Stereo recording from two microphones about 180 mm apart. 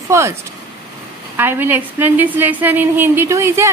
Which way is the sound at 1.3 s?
10° right (ahead or behind).